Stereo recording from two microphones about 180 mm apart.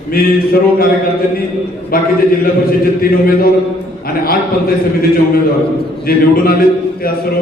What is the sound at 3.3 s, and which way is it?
A man's voice, 55° left (ahead or behind).